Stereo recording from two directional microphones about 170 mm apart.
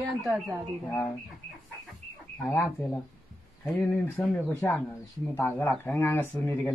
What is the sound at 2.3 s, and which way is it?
Speech, 10° left (ahead or behind).